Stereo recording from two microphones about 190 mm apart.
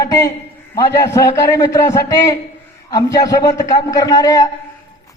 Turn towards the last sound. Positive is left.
turn(degrees=20)  # may be behind; listen again after turning